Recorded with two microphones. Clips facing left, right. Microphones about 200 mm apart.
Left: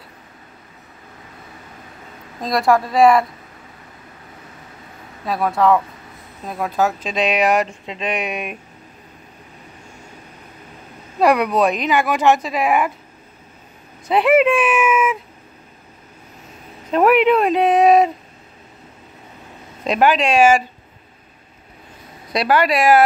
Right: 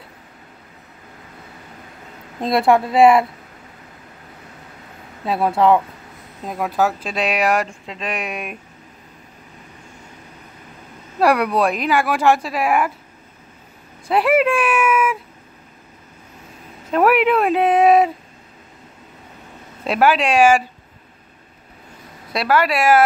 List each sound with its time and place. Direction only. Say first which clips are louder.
2.4 s a woman's voice: right 1 dB; 25° right (ahead or behind)
5.2 s a woman's voice: right 1 dB; 30° right (ahead or behind)
6.8 s speech: left 1 dB; 5° right (ahead or behind)
11.1 s speech: left 1 dB; 5° right (ahead or behind)
14.1 s speech: left 2 dB; centre (ahead or behind)
16.9 s speech: left 2 dB; 5° right (ahead or behind)
19.8 s speech: even; 5° right (ahead or behind)
22.3 s speech: left 1 dB; centre (ahead or behind)